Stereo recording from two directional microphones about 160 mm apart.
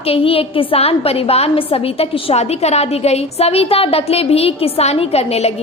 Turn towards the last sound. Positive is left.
turn(degrees=40)  # may be behind; listen again after turning